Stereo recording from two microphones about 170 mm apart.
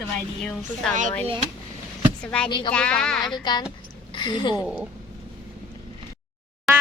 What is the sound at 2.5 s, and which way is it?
Speech, 30° left (ahead or behind).